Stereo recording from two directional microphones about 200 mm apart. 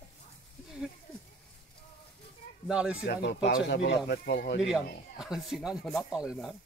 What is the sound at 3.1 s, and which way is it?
Speech, 55° left (ahead or behind).